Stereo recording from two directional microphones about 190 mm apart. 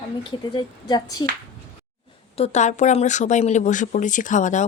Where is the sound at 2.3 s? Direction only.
35° left (ahead or behind).